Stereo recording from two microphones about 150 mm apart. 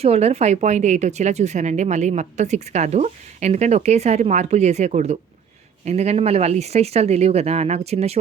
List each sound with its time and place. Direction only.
0.0 s a woman's voice: 45° right (ahead or behind)